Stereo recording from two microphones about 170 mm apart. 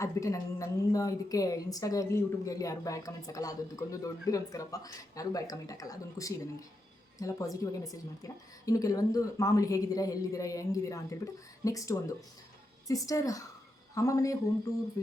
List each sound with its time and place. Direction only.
0.0 s a woman's voice: 20° left (ahead or behind)